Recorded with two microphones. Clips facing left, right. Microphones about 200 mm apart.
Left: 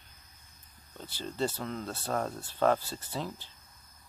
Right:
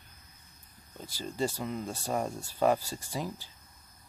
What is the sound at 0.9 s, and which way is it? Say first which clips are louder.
Speech: even; 10° right (ahead or behind).